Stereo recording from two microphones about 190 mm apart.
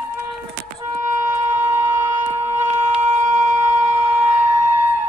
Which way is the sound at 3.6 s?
15° right (ahead or behind).